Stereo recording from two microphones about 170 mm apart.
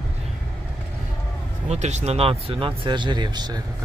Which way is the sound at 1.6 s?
40° right (ahead or behind).